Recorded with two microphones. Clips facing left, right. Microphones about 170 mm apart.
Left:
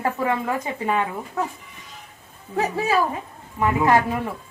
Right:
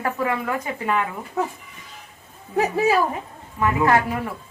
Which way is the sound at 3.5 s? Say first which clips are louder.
Even; 20° left (ahead or behind).